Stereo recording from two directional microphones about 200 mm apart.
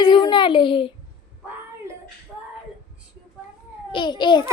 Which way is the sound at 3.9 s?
25° left (ahead or behind).